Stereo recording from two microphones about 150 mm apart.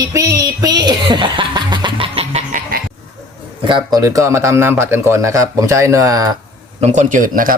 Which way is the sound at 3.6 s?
30° right (ahead or behind).